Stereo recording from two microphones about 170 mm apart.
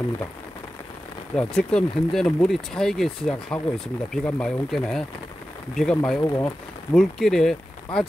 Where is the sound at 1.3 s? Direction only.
5° left (ahead or behind).